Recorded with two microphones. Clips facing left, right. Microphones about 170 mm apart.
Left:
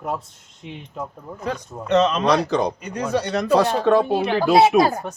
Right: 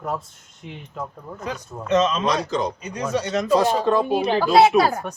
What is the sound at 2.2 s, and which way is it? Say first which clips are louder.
Speech: left 4 dB; 65° left (ahead or behind).